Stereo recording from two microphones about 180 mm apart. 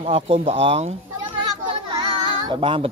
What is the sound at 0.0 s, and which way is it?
Speech, 35° right (ahead or behind).